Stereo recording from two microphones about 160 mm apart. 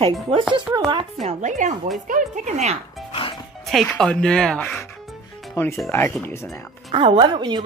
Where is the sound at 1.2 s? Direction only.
50° right (ahead or behind).